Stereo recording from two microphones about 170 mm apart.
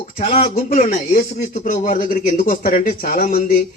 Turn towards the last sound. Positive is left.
turn(degrees=55)  # may be behind; listen again after turning